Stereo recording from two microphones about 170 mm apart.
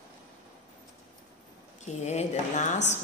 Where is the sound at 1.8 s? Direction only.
40° left (ahead or behind).